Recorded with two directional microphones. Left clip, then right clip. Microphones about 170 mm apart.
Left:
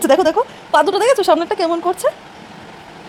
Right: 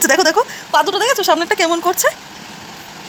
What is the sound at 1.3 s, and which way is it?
Speech, 10° left (ahead or behind).